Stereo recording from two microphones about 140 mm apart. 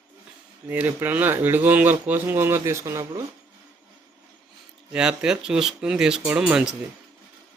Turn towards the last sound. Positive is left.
turn(degrees=-5)  # may be behind; listen again after turning